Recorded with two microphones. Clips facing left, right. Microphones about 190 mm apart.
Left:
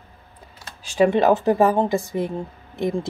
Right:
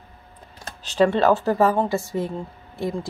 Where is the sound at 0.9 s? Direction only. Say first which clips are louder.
Left 1 dB; 15° left (ahead or behind).